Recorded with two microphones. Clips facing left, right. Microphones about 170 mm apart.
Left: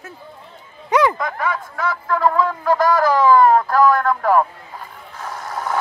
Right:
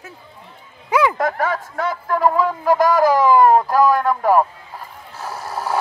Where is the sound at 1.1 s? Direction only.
40° right (ahead or behind).